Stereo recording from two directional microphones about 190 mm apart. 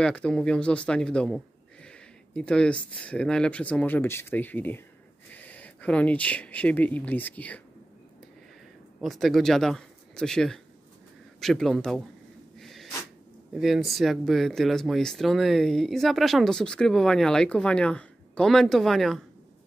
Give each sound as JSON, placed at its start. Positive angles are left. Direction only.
{"t": 0.0, "sound": "speech", "side_deg": 5}
{"t": 9.0, "sound": "speech", "side_deg": 0}
{"t": 12.5, "sound": "sneeze", "side_deg": 0}
{"t": 13.6, "sound": "speech", "side_deg": 0}